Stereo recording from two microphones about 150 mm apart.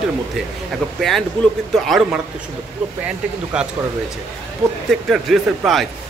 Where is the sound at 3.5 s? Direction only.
5° right (ahead or behind).